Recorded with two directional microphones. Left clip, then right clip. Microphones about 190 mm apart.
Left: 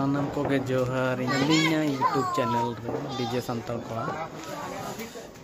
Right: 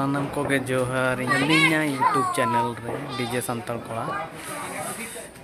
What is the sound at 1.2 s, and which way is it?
Speech, 15° left (ahead or behind).